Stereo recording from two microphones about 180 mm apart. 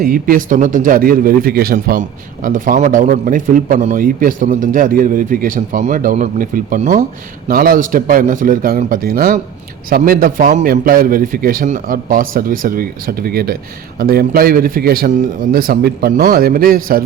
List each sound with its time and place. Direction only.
0.0 s a man's voice: 50° right (ahead or behind)
7.4 s a man's voice: 55° right (ahead or behind)